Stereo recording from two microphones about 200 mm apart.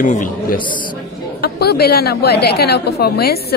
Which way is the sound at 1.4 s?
50° left (ahead or behind).